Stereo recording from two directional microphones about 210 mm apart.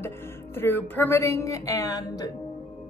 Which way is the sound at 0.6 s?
10° left (ahead or behind).